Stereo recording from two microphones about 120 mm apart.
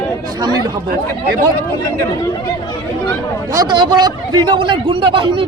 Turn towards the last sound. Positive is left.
turn(degrees=-45)  # may be behind; listen again after turning